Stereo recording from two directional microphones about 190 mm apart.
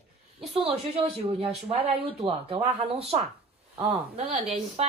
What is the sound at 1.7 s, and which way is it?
Speech, 30° right (ahead or behind).